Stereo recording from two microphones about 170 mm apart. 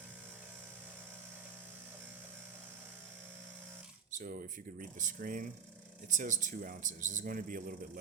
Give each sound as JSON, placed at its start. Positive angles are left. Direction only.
{"t": 4.1, "sound": "speech", "side_deg": -55}